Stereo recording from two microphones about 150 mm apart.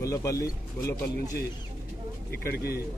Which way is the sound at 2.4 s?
90° left.